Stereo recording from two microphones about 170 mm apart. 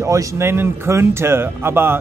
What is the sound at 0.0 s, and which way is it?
Speech, 20° right (ahead or behind).